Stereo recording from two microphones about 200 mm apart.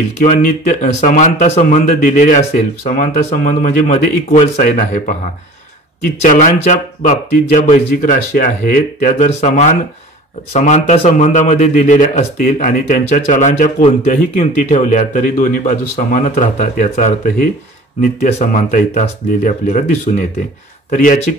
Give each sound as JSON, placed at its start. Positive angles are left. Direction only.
{"t": 0.2, "sound": "a man's voice", "side_deg": 40}
{"t": 6.2, "sound": "a man's voice", "side_deg": 40}